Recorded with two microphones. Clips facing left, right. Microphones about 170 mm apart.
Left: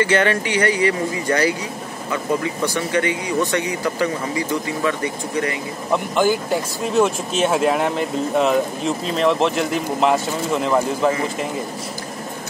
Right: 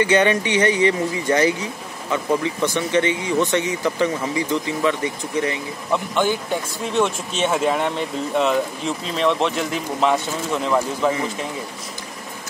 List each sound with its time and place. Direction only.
0.0 s speech: 20° right (ahead or behind)
5.9 s speech: 5° left (ahead or behind)